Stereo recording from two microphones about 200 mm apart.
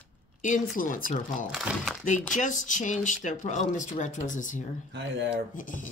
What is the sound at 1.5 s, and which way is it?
Speech, 5° right (ahead or behind).